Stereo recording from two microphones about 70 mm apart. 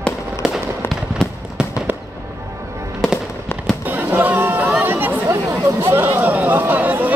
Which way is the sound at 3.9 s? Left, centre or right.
Right.